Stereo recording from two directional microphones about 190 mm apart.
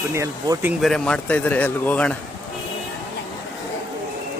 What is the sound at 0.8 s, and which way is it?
A man's voice, 5° left (ahead or behind).